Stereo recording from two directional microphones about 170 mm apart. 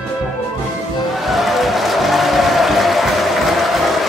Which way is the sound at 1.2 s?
Centre (ahead or behind).